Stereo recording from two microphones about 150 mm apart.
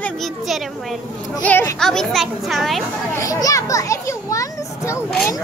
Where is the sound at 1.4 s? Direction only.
10° left (ahead or behind).